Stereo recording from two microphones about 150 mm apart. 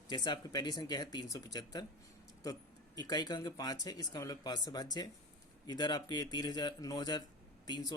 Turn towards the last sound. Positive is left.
turn(degrees=25)  # may be behind; listen again after turning